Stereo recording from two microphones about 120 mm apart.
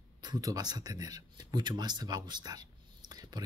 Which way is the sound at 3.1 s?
35° right (ahead or behind).